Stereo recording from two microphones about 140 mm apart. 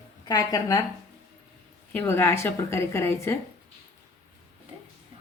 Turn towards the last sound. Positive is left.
turn(degrees=20)  # may be behind; listen again after turning